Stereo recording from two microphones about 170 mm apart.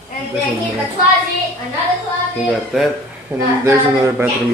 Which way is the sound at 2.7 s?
Centre (ahead or behind).